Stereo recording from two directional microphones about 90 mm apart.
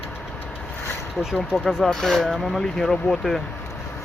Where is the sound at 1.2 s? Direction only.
5° right (ahead or behind).